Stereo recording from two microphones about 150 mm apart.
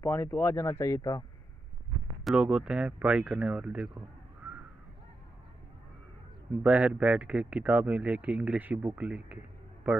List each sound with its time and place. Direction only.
0.0 s speech: 15° left (ahead or behind)
2.2 s speech: 5° right (ahead or behind)
6.6 s speech: 10° right (ahead or behind)